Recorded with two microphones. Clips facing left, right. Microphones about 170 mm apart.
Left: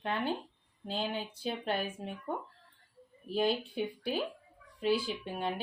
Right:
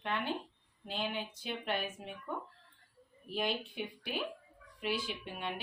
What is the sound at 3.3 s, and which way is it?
Speech, 35° left (ahead or behind).